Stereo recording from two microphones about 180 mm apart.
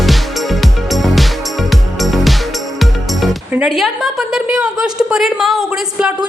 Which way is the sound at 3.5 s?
5° right (ahead or behind).